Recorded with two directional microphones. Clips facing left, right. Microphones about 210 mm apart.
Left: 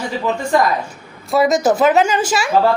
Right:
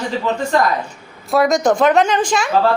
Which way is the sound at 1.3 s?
Centre (ahead or behind).